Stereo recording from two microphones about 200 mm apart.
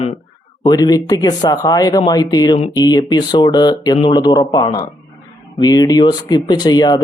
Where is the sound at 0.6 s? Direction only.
20° left (ahead or behind).